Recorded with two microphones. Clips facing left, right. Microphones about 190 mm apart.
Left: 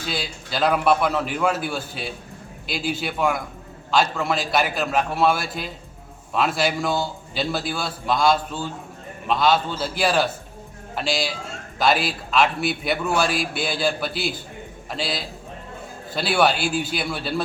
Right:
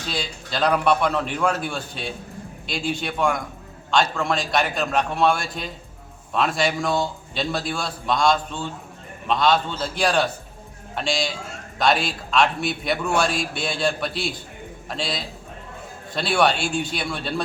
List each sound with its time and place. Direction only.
0.0 s a man's voice: 5° left (ahead or behind)